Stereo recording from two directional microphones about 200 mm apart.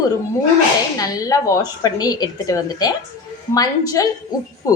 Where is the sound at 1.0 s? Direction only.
20° left (ahead or behind).